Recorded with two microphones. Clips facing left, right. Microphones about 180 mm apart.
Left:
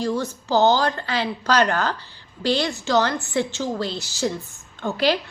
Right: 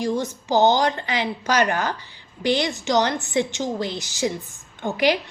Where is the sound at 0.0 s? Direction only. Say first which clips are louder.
Even; 15° right (ahead or behind).